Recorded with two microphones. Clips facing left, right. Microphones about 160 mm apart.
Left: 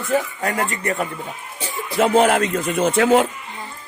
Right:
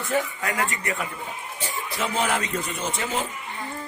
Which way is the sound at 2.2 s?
60° left (ahead or behind).